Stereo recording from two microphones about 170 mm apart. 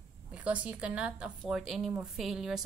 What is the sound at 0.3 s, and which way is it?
A woman's voice, 10° right (ahead or behind).